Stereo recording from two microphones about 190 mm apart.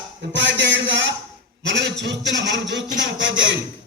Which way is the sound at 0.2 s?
70° right (ahead or behind).